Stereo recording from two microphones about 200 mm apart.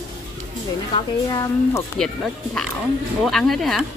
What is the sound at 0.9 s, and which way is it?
Speech, 15° left (ahead or behind).